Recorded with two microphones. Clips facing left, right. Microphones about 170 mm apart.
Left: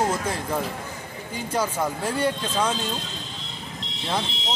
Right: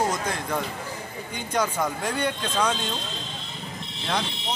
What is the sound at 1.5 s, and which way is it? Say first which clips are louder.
Speech: even; 5° left (ahead or behind).